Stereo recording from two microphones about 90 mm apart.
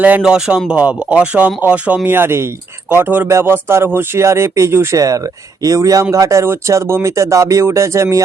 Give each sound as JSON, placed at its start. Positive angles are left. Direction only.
{"t": 0.2, "sound": "speech", "side_deg": -5}
{"t": 4.9, "sound": "speech", "side_deg": -40}